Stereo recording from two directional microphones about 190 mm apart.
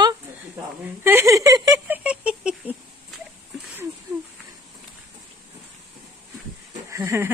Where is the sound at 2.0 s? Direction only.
5° right (ahead or behind).